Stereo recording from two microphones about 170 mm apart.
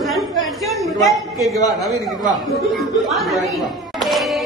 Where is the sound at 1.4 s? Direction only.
20° left (ahead or behind).